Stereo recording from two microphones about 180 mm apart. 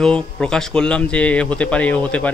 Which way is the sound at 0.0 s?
5° left (ahead or behind).